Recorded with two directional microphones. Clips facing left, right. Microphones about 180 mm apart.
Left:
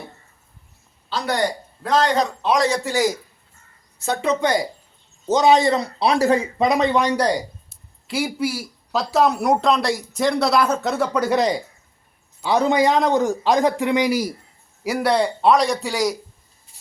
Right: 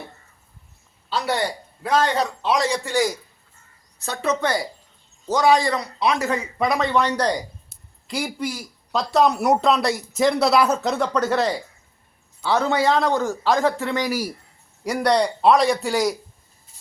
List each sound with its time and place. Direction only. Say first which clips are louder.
1.8 s speech: left 2 dB; 10° right (ahead or behind)
4.0 s a man's voice: left 3 dB; 15° left (ahead or behind)
14.8 s speech: even; 5° left (ahead or behind)